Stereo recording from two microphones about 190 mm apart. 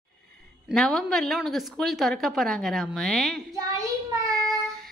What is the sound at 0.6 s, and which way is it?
A woman's voice, centre (ahead or behind).